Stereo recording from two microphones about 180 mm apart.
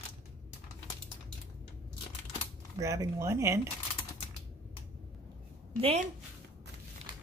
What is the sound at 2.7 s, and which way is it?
Speech, 15° right (ahead or behind).